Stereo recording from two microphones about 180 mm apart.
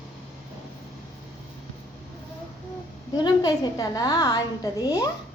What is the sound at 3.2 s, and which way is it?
A woman's voice, 20° left (ahead or behind).